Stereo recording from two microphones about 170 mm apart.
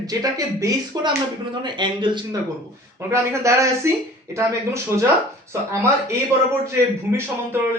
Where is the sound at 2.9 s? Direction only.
15° right (ahead or behind).